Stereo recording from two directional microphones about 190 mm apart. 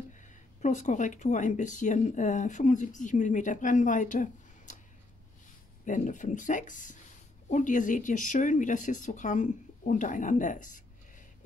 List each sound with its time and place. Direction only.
0.2 s speech: 40° left (ahead or behind)
5.9 s speech: 40° left (ahead or behind)